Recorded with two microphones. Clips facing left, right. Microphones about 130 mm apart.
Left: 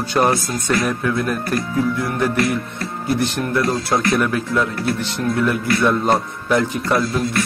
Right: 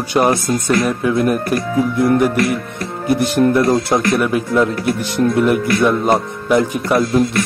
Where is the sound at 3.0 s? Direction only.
15° right (ahead or behind).